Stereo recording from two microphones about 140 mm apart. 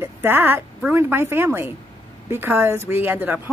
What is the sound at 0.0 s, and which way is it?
A woman's voice, 15° right (ahead or behind).